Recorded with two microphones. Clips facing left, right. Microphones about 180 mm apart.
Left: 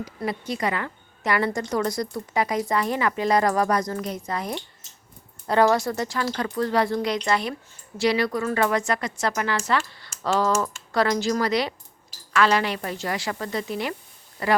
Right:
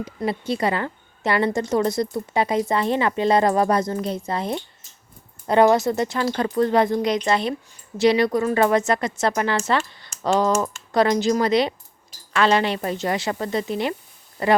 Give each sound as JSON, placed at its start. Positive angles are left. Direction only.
{"t": 0.0, "sound": "a woman's voice", "side_deg": -25}